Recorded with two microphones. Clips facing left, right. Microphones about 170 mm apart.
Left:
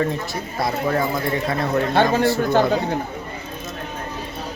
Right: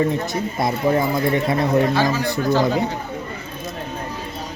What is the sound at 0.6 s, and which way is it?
Speech, 20° right (ahead or behind).